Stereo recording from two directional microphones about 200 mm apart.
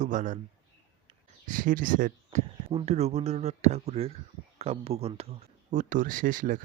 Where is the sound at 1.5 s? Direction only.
45° right (ahead or behind).